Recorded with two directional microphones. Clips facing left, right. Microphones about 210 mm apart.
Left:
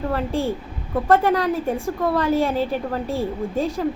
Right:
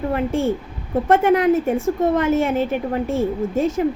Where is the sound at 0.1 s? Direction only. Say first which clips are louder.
Right 4 dB; 20° right (ahead or behind).